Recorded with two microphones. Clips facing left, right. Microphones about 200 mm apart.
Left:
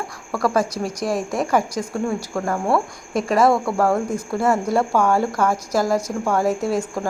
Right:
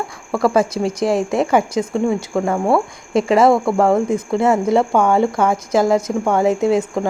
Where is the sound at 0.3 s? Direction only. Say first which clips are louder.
Right 4 dB; 25° right (ahead or behind).